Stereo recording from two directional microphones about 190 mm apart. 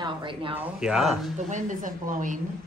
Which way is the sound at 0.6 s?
5° right (ahead or behind).